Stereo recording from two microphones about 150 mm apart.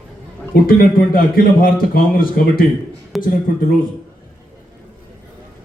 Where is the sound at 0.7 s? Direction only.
75° left (ahead or behind).